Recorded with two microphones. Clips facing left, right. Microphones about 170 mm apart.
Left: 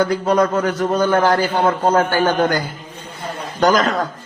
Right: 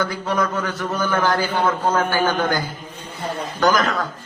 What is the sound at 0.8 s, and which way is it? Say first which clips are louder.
Cough: left 7 dB; 25° left (ahead or behind).